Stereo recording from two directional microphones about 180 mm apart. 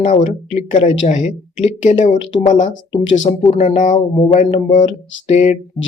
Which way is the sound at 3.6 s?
45° left (ahead or behind).